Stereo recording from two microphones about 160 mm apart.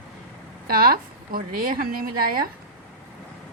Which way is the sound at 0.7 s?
70° right (ahead or behind).